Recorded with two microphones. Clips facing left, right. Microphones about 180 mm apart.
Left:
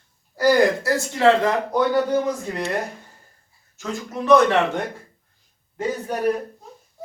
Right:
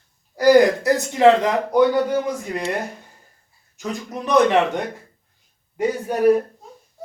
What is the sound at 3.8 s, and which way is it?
A man's voice, 15° right (ahead or behind).